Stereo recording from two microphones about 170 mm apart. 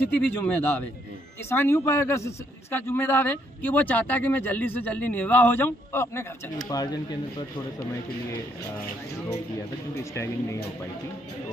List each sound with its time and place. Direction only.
0.1 s a man's voice: 10° left (ahead or behind)
10.1 s a man's voice: 15° left (ahead or behind)